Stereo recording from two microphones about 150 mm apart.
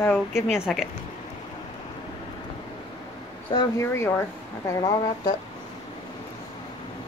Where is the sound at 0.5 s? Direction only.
5° right (ahead or behind).